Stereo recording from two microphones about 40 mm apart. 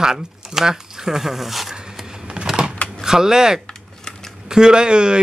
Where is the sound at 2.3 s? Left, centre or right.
Right.